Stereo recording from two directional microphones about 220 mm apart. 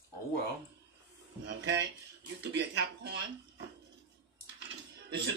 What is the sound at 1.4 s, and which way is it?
Speech, 55° right (ahead or behind).